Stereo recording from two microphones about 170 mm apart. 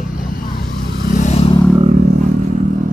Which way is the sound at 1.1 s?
45° left (ahead or behind).